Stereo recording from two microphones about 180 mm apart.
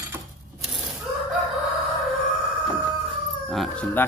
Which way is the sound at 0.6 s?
Centre (ahead or behind).